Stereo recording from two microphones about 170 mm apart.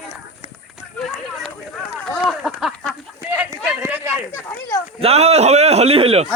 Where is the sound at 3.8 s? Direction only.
15° right (ahead or behind).